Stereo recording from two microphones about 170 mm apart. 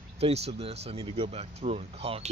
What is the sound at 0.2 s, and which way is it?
Speech, 40° right (ahead or behind).